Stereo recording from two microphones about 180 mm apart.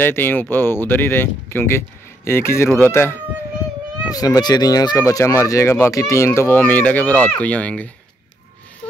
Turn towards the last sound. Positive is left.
turn(degrees=10)  # may be behind; listen again after turning